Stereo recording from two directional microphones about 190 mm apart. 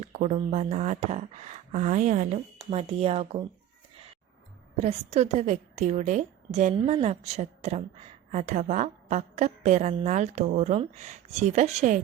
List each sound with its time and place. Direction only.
0.0 s a woman's voice: 35° right (ahead or behind)
4.8 s a woman's voice: 35° right (ahead or behind)